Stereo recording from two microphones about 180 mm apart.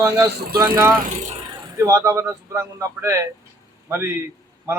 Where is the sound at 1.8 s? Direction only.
15° right (ahead or behind).